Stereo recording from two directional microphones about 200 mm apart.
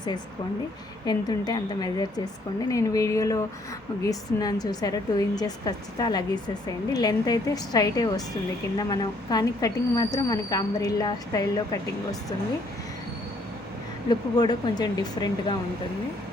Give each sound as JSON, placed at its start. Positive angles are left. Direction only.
{"t": 1.0, "sound": "a woman's voice", "side_deg": 20}
{"t": 14.1, "sound": "a woman's voice", "side_deg": 20}